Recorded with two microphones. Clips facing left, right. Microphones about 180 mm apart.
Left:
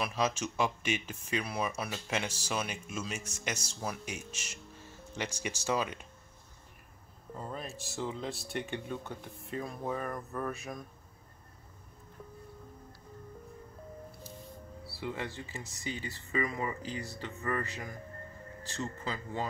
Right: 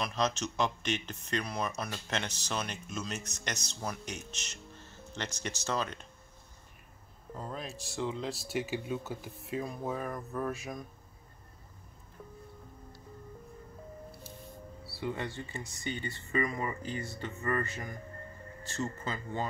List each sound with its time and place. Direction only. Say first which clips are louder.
0.0 s speech: even; 10° left (ahead or behind)
7.3 s speech: even; centre (ahead or behind)
14.9 s speech: right 2 dB; centre (ahead or behind)